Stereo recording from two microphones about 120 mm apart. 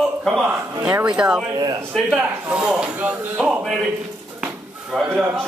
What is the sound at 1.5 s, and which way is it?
Speech, 35° right (ahead or behind).